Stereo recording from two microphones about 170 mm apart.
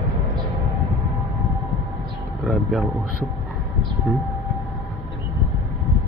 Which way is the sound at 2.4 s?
Centre (ahead or behind).